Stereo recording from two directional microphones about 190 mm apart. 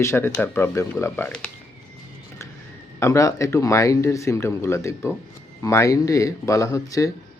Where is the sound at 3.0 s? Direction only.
15° left (ahead or behind).